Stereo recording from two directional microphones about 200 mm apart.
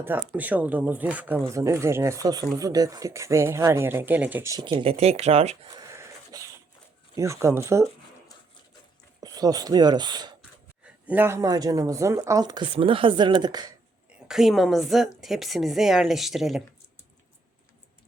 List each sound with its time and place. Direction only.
0.0 s speech: 10° right (ahead or behind); by 5.5 s 30° right (ahead or behind)
5.7 s a sound: 15° right (ahead or behind)
7.2 s speech: 15° right (ahead or behind)
9.2 s speech: 20° right (ahead or behind)
11.0 s speech: 10° right (ahead or behind)
14.1 s a woman's voice: centre (ahead or behind)